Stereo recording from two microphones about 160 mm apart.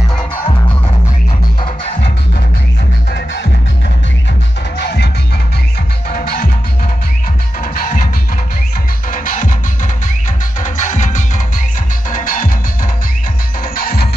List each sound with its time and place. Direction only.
3.1 s music: 85° left
4.7 s music: 90° left
6.0 s music: 70° left (ahead or behind)
7.6 s music: 60° left (ahead or behind)
9.1 s music: 55° left (ahead or behind)
10.6 s music: 50° left (ahead or behind)
13.7 s music: 65° left (ahead or behind)